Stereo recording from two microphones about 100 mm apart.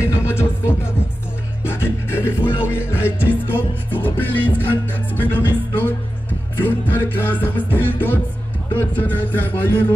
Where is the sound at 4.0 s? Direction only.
20° left (ahead or behind).